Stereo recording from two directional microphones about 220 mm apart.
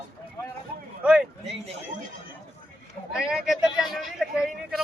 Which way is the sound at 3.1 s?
5° right (ahead or behind).